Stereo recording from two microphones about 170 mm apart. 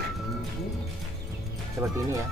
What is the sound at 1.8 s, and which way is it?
Music, 10° right (ahead or behind).